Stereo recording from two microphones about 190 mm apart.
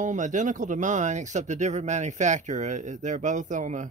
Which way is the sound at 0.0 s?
40° right (ahead or behind).